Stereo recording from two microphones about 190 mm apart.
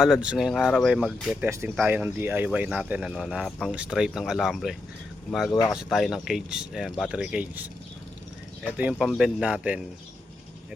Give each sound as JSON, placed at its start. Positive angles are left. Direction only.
{"t": 0.0, "sound": "speech", "side_deg": -5}
{"t": 5.5, "sound": "speech", "side_deg": 20}
{"t": 5.7, "sound": "speech", "side_deg": 0}
{"t": 8.8, "sound": "speech", "side_deg": -5}